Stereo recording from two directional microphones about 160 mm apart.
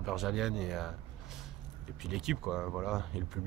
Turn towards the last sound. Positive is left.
turn(degrees=-5)  # may be behind; listen again after turning